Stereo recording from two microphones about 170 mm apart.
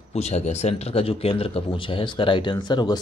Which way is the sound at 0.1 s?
40° left (ahead or behind).